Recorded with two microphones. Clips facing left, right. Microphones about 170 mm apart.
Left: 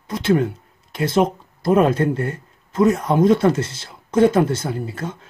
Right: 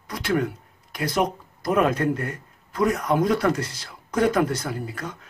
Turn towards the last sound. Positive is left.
turn(degrees=25)  # may be behind; listen again after turning